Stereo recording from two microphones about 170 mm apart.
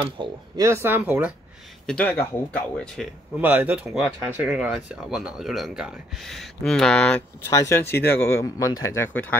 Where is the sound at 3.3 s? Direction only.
10° right (ahead or behind).